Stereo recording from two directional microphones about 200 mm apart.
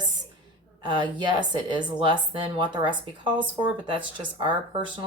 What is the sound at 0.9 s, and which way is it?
Speech, 20° right (ahead or behind).